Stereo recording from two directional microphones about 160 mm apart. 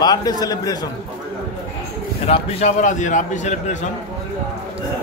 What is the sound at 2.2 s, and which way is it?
A man's voice, 40° left (ahead or behind).